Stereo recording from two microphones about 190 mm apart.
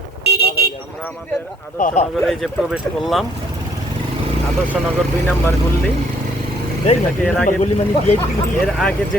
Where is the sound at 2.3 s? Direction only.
Centre (ahead or behind).